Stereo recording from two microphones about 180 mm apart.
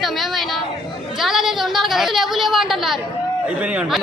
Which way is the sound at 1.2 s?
Centre (ahead or behind).